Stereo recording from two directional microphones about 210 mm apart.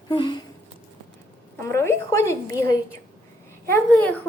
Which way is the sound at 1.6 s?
15° left (ahead or behind).